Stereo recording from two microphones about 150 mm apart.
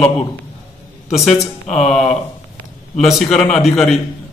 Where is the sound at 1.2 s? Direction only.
45° left (ahead or behind).